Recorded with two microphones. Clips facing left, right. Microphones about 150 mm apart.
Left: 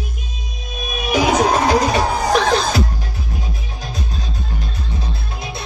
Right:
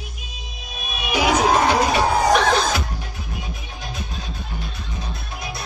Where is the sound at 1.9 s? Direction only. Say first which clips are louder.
Even; 35° left (ahead or behind).